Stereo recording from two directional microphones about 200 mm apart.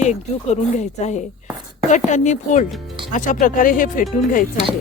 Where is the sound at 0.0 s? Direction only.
35° left (ahead or behind).